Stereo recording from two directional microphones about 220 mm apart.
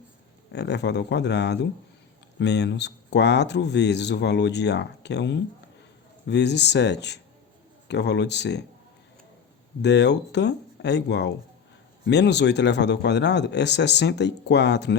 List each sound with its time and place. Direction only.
0.5 s speech: 50° left (ahead or behind)
9.8 s speech: 50° left (ahead or behind)